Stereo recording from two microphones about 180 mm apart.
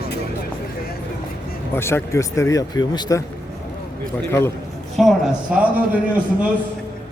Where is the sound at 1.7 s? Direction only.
15° left (ahead or behind).